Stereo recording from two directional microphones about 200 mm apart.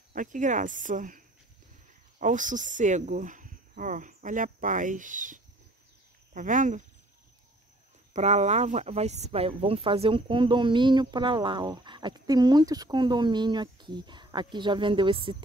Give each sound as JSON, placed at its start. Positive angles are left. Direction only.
{"t": 0.1, "sound": "speech", "side_deg": -40}
{"t": 8.1, "sound": "speech", "side_deg": -35}